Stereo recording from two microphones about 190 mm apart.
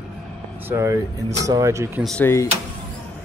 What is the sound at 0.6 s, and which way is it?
Speech, 15° right (ahead or behind).